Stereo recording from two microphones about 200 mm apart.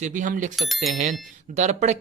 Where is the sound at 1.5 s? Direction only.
35° right (ahead or behind).